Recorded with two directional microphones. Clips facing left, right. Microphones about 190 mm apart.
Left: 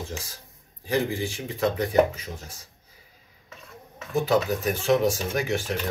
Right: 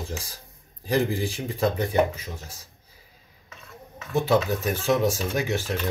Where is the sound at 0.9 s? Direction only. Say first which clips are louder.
Right 2 dB; 35° right (ahead or behind).